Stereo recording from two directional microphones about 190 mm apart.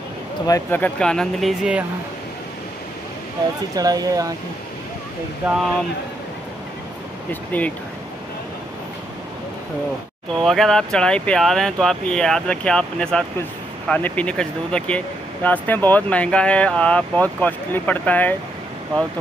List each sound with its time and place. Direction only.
0.5 s speech: 10° left (ahead or behind); by 1.9 s 5° right (ahead or behind)
3.7 s speech: 20° right (ahead or behind)
7.5 s speech: 10° left (ahead or behind)
10.3 s speech: centre (ahead or behind)